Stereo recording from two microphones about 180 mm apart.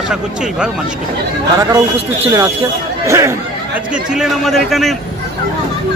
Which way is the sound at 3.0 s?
15° right (ahead or behind).